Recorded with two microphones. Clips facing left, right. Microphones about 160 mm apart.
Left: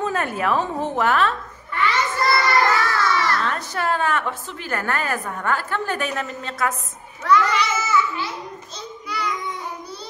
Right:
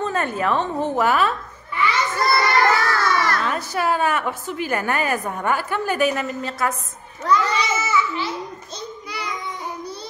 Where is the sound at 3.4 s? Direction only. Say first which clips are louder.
Right 2 dB; 10° right (ahead or behind).